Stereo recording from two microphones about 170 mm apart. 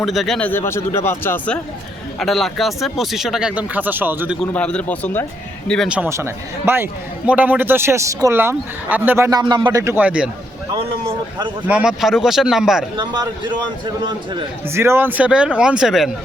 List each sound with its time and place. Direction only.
0.0 s speech: centre (ahead or behind)
2.1 s speech: centre (ahead or behind)
4.5 s speech: 5° left (ahead or behind)
5.9 s speech: 15° right (ahead or behind)
9.8 s speech: 10° right (ahead or behind)
11.7 s speech: 5° right (ahead or behind)
13.0 s a man's voice: 25° right (ahead or behind)
14.7 s speech: 15° right (ahead or behind)